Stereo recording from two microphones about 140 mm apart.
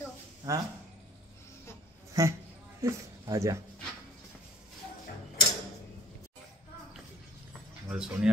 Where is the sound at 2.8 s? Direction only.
20° right (ahead or behind).